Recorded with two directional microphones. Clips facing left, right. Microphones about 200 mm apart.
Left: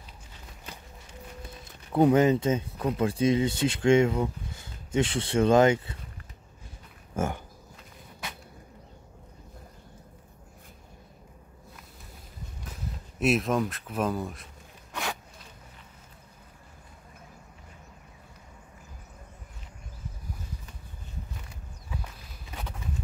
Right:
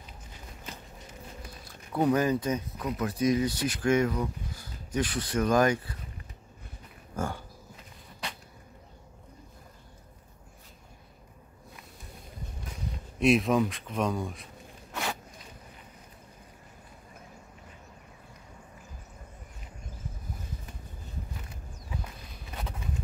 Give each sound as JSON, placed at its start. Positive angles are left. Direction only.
{"t": 1.6, "sound": "speech", "side_deg": 25}
{"t": 7.2, "sound": "pig", "side_deg": 20}
{"t": 13.2, "sound": "speech", "side_deg": 0}